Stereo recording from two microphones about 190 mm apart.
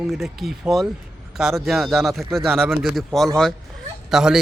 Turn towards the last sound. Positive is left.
turn(degrees=-5)  # may be behind; listen again after turning